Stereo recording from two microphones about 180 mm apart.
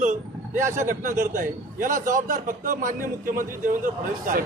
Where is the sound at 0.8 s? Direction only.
45° right (ahead or behind).